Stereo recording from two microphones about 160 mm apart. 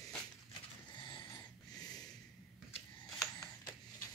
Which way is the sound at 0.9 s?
30° left (ahead or behind).